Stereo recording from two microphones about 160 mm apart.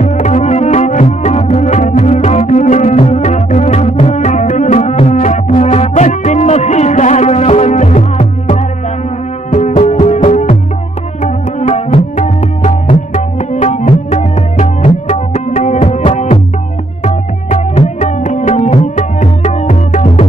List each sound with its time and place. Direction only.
0.0 s music: 45° left (ahead or behind)
11.2 s tabla: 45° left (ahead or behind)
15.0 s music: 50° left (ahead or behind)
17.0 s music: 45° left (ahead or behind)